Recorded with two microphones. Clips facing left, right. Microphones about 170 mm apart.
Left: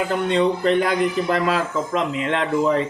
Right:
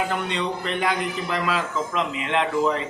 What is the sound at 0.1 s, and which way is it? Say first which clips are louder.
A man's voice: left 7 dB; 40° left (ahead or behind).